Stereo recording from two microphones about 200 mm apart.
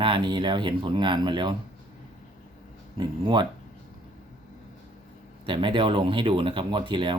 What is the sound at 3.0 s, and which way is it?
Speech, 20° right (ahead or behind).